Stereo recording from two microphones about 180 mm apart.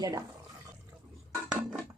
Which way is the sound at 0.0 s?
20° right (ahead or behind).